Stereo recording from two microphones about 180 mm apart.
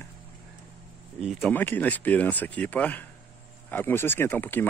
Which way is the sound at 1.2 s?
Centre (ahead or behind).